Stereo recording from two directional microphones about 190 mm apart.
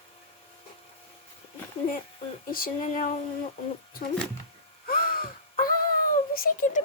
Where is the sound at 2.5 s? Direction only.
45° left (ahead or behind).